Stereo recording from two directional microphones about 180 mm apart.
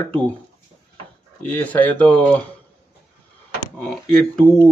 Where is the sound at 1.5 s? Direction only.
10° left (ahead or behind).